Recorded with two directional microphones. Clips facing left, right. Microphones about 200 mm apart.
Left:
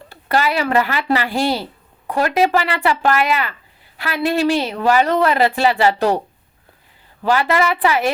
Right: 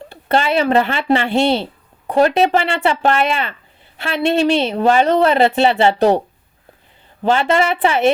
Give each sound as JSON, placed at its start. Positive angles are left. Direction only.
{"t": 0.1, "sound": "a woman's voice", "side_deg": -25}